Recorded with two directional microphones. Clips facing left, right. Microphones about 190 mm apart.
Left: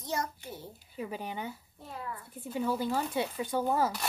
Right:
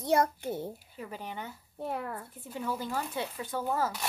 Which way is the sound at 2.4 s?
10° left (ahead or behind).